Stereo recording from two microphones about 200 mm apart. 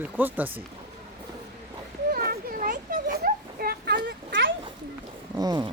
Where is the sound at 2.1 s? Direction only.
45° right (ahead or behind); by 4.5 s 65° right (ahead or behind).